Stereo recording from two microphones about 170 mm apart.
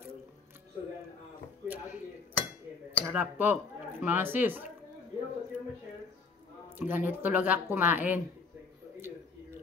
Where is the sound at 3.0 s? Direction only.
10° right (ahead or behind).